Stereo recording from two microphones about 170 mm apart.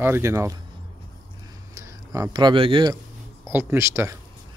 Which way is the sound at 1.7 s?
20° right (ahead or behind).